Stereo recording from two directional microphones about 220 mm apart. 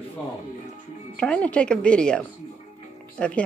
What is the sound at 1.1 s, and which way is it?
Speech, 5° left (ahead or behind).